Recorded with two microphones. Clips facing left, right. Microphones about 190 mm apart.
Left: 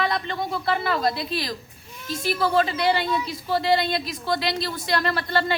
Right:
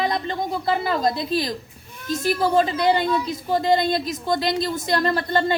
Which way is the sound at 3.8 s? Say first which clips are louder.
Right 4 dB; 45° right (ahead or behind).